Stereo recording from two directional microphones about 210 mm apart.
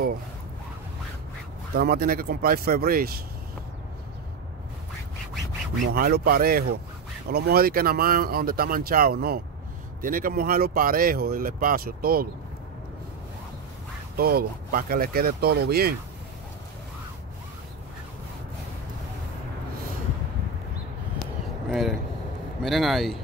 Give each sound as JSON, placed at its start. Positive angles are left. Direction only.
{"t": 1.8, "sound": "speech", "side_deg": -45}
{"t": 5.9, "sound": "speech", "side_deg": -45}
{"t": 14.1, "sound": "speech", "side_deg": -45}
{"t": 21.6, "sound": "a sound", "side_deg": 0}
{"t": 22.6, "sound": "a man's voice", "side_deg": 0}